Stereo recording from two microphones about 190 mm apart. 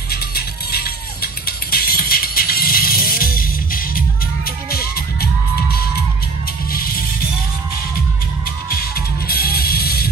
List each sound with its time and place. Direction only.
0.1 s music: 55° left (ahead or behind)
8.6 s music: 50° left (ahead or behind)